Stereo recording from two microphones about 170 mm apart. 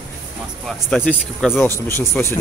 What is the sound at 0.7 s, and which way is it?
Speech, 5° left (ahead or behind).